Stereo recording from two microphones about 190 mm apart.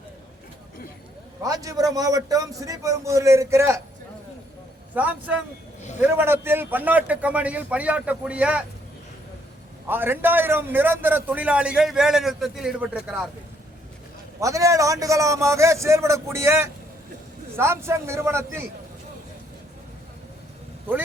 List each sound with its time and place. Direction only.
1.4 s a man's voice: 20° right (ahead or behind)
4.9 s a man's voice: 10° right (ahead or behind)
9.9 s a man's voice: 10° right (ahead or behind)
14.4 s a man's voice: 15° right (ahead or behind)